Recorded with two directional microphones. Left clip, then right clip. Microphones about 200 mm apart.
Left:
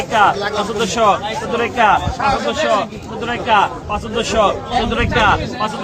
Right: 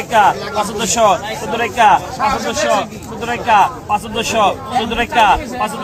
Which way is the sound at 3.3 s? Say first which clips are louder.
Right 2 dB; 40° right (ahead or behind).